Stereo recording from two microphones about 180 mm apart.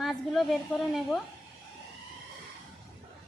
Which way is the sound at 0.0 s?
Centre (ahead or behind).